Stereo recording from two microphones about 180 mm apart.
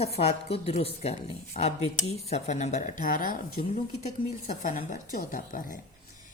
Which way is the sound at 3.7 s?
40° left (ahead or behind).